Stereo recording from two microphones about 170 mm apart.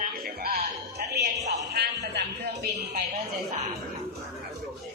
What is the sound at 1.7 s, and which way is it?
Speech, 80° right.